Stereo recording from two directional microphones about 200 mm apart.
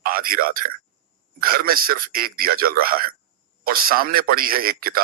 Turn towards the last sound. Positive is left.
turn(degrees=-45)  # may be behind; listen again after turning